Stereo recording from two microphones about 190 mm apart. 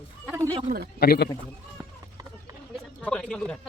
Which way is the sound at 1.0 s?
50° left (ahead or behind).